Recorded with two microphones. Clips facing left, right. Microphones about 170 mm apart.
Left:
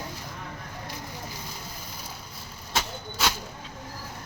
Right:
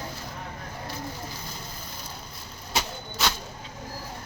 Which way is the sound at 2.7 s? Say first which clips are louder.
Even; 5° left (ahead or behind).